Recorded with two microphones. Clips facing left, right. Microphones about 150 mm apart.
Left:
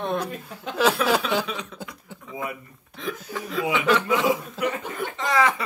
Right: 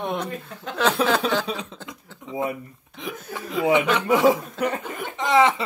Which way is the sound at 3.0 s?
20° right (ahead or behind).